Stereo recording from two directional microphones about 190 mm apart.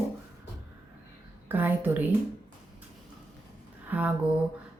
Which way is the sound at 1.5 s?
10° right (ahead or behind).